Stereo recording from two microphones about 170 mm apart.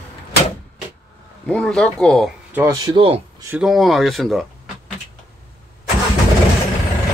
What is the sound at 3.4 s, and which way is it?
Speech, 5° right (ahead or behind).